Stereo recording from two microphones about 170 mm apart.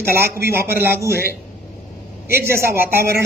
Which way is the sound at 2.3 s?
15° right (ahead or behind).